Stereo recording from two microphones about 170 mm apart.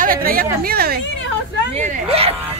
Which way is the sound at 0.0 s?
55° right (ahead or behind).